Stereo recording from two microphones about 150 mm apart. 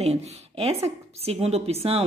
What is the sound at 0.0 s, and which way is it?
A woman's voice, 45° right (ahead or behind).